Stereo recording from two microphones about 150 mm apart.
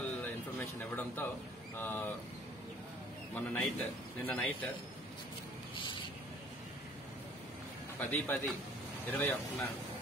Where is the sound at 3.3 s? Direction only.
10° left (ahead or behind).